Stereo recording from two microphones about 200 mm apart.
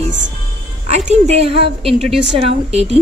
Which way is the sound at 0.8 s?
35° right (ahead or behind).